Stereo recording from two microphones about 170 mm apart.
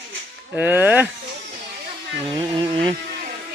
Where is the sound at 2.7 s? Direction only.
30° right (ahead or behind).